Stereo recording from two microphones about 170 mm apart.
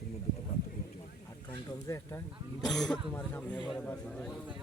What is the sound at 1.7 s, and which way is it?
Speech, 20° left (ahead or behind).